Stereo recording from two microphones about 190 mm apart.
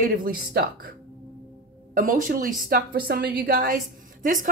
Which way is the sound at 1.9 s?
45° right (ahead or behind).